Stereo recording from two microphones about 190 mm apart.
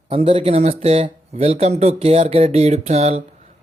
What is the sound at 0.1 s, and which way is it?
Speech, 30° right (ahead or behind).